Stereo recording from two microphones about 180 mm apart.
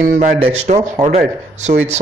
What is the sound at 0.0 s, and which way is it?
Speech, 45° right (ahead or behind).